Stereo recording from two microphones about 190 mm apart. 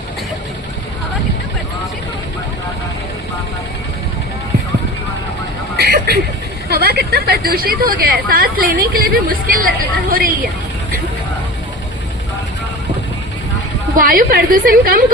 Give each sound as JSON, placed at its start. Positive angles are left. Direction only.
{"t": 5.7, "sound": "a sound", "side_deg": -55}
{"t": 6.7, "sound": "a woman's voice", "side_deg": -55}
{"t": 13.9, "sound": "a woman's voice", "side_deg": -45}